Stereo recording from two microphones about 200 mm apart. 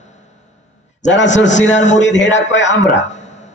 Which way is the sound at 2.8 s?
35° left (ahead or behind).